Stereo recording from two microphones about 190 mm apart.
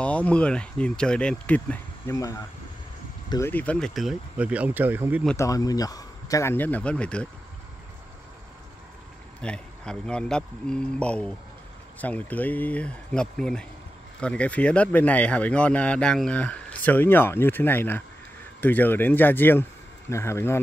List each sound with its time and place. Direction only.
0.0 s speech: 5° left (ahead or behind); by 5.2 s 10° right (ahead or behind)
5.2 s speech: 10° left (ahead or behind)
9.4 s speech: 5° left (ahead or behind)